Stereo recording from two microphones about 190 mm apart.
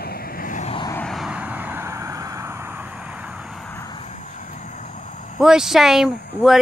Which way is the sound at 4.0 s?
40° left (ahead or behind).